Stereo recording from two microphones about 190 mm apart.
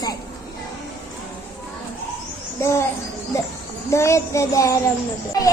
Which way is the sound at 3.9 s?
15° left (ahead or behind).